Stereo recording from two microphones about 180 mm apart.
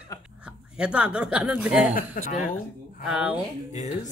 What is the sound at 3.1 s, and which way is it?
Speech, 10° right (ahead or behind).